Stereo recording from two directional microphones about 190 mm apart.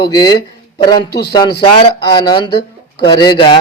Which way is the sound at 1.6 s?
25° left (ahead or behind).